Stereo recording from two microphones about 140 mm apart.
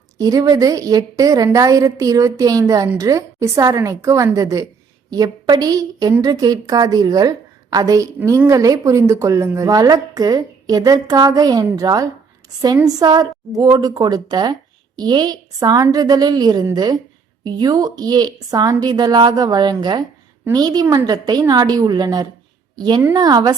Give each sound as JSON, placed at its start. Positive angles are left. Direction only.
{"t": 0.2, "sound": "a woman's voice", "side_deg": -25}